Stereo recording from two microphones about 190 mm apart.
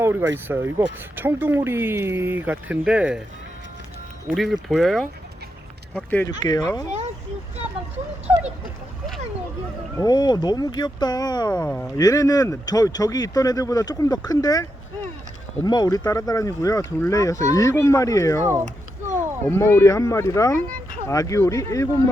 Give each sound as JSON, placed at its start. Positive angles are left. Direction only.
{"t": 0.0, "sound": "speech", "side_deg": -10}
{"t": 4.3, "sound": "speech", "side_deg": 0}
{"t": 6.4, "sound": "speech", "side_deg": 20}
{"t": 10.0, "sound": "speech", "side_deg": 20}
{"t": 18.6, "sound": "a sound", "side_deg": -40}
{"t": 19.5, "sound": "speech", "side_deg": 10}